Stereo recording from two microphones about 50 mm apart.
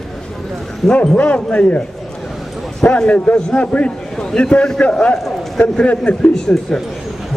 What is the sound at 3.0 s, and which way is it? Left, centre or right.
Speech, left.